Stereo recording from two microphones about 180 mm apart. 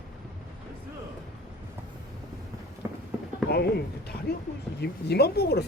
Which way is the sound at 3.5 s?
65° left (ahead or behind).